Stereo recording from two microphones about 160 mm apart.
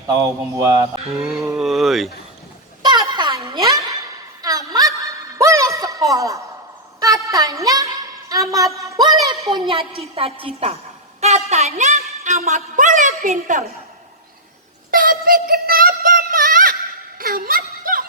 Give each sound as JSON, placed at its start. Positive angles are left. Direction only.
{"t": 0.1, "sound": "speech", "side_deg": -20}
{"t": 1.2, "sound": "speech", "side_deg": 0}
{"t": 2.8, "sound": "a sound", "side_deg": -25}
{"t": 7.0, "sound": "music", "side_deg": -20}
{"t": 8.8, "sound": "a woman's voice", "side_deg": -20}
{"t": 11.2, "sound": "a sound", "side_deg": -40}
{"t": 14.8, "sound": "synthetic singing", "side_deg": -60}
{"t": 17.2, "sound": "snicker", "side_deg": -65}